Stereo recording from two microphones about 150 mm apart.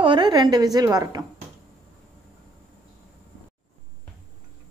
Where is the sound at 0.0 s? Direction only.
30° right (ahead or behind).